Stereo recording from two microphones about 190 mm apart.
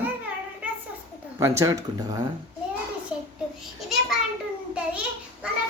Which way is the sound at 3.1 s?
5° right (ahead or behind).